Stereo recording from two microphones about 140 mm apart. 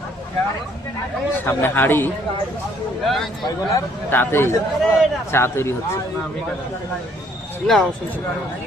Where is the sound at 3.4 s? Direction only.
25° left (ahead or behind).